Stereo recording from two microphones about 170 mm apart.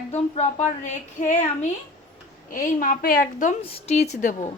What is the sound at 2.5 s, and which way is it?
A woman's voice, 55° left (ahead or behind).